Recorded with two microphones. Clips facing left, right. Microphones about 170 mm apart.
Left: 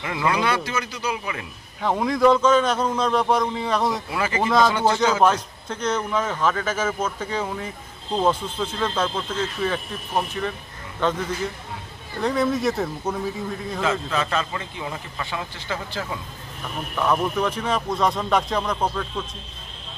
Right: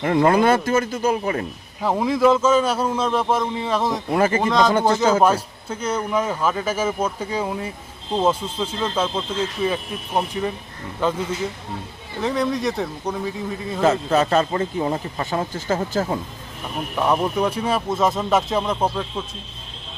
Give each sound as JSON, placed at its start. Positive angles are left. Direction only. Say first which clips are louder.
{"t": 0.0, "sound": "speech", "louder": "right 7 dB", "side_deg": -45}
{"t": 1.8, "sound": "a man's voice", "louder": "right 1 dB", "side_deg": -5}
{"t": 4.1, "sound": "speech", "louder": "right 7 dB", "side_deg": -45}
{"t": 4.4, "sound": "a man's voice", "louder": "left 4 dB", "side_deg": 5}
{"t": 5.2, "sound": "a man's voice", "louder": "right 1 dB", "side_deg": -10}
{"t": 12.2, "sound": "a man's voice", "louder": "even", "side_deg": 0}
{"t": 13.8, "sound": "a man's voice", "louder": "right 7 dB", "side_deg": -40}
{"t": 16.9, "sound": "a man's voice", "louder": "right 2 dB", "side_deg": -15}